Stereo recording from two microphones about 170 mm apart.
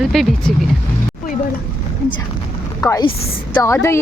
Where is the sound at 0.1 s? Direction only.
Centre (ahead or behind).